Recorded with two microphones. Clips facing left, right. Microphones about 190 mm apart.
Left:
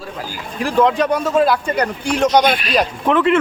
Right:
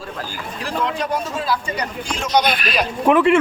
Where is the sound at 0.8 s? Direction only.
65° left (ahead or behind).